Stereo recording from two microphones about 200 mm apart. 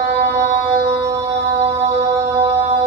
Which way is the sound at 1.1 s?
30° right (ahead or behind).